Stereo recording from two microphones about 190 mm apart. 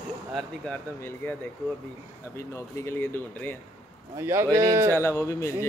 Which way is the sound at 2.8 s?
10° left (ahead or behind).